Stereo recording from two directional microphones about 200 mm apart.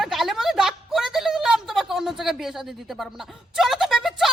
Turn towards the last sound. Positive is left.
turn(degrees=0)  # may be behind; listen again after turning